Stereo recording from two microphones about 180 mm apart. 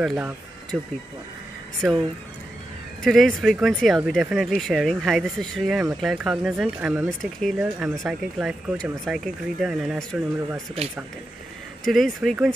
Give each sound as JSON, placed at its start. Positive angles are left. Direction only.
{"t": 0.0, "sound": "speech", "side_deg": 0}
{"t": 1.8, "sound": "speech", "side_deg": 0}
{"t": 11.9, "sound": "speech", "side_deg": 0}